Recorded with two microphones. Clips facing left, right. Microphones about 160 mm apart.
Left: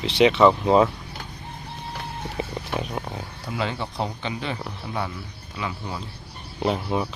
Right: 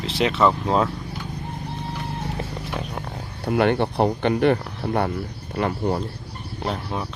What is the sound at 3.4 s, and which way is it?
Speech, 60° right (ahead or behind).